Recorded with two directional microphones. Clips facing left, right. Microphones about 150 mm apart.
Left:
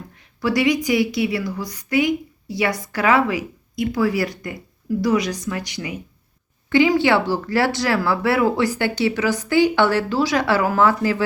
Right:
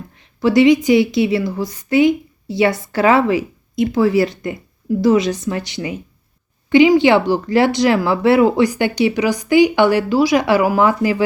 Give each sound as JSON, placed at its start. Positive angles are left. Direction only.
{"t": 0.2, "sound": "a woman's voice", "side_deg": -25}
{"t": 6.7, "sound": "speech", "side_deg": -15}